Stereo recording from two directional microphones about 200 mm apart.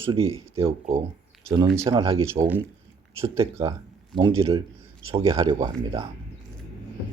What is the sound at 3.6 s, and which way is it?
Speech, 20° right (ahead or behind).